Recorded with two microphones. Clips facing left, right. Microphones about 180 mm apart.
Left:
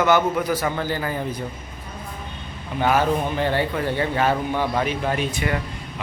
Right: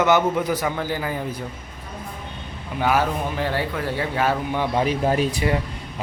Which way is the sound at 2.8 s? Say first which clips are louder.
Left 1 dB; 5° right (ahead or behind).